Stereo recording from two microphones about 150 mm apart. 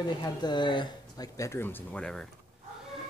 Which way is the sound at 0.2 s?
30° left (ahead or behind).